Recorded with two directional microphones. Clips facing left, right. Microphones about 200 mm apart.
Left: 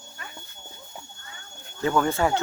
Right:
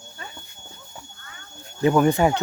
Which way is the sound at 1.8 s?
15° right (ahead or behind).